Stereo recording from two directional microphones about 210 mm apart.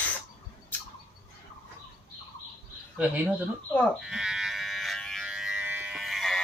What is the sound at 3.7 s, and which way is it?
Electric shaver, 5° right (ahead or behind).